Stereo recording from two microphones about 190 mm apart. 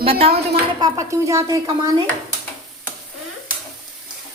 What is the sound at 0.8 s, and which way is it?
Speech, 15° right (ahead or behind).